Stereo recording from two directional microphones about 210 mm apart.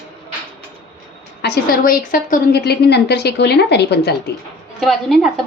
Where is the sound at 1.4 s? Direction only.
45° left (ahead or behind).